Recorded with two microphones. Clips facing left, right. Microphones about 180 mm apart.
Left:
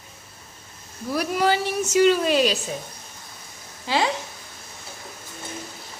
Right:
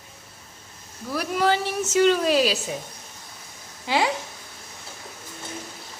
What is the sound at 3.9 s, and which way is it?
Speech, 15° right (ahead or behind).